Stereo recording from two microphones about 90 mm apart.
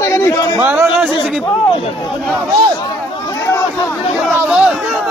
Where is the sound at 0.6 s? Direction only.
20° right (ahead or behind).